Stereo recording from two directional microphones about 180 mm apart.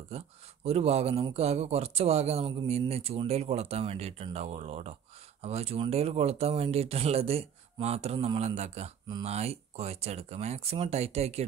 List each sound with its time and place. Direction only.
0.1 s a man's voice: 35° right (ahead or behind)